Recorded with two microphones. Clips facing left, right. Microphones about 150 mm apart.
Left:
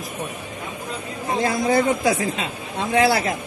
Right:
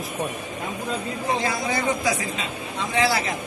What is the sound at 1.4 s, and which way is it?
A man's voice, 50° left (ahead or behind).